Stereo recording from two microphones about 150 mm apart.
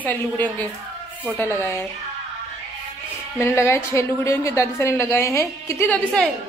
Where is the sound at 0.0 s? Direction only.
10° left (ahead or behind).